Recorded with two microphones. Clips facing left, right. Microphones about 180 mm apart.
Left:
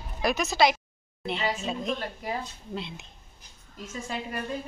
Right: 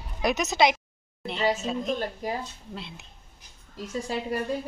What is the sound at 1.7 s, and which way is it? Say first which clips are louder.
Speech: right 2 dB; 5° left (ahead or behind).